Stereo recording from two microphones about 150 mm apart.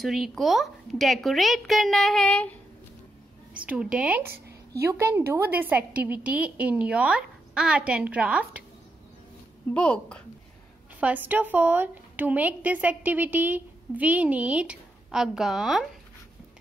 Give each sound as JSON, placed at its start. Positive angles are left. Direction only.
{"t": 0.0, "sound": "a woman's voice", "side_deg": 0}
{"t": 3.5, "sound": "a woman's voice", "side_deg": -10}
{"t": 4.3, "sound": "a sound", "side_deg": -90}
{"t": 4.8, "sound": "a woman's voice", "side_deg": -15}
{"t": 9.8, "sound": "a woman's voice", "side_deg": 5}
{"t": 11.0, "sound": "a woman's voice", "side_deg": -10}